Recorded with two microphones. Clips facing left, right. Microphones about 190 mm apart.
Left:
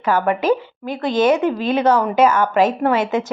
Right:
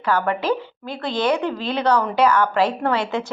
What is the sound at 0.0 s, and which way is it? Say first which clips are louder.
A woman's voice: left 3 dB; 20° left (ahead or behind).